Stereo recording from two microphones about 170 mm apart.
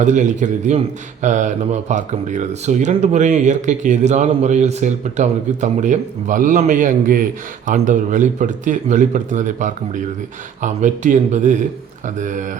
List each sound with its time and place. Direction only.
0.0 s speech: 45° right (ahead or behind)